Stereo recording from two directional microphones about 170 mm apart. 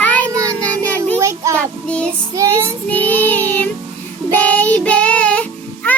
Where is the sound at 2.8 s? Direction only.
10° left (ahead or behind).